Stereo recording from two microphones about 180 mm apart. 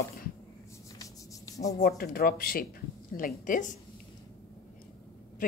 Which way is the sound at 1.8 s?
55° left (ahead or behind).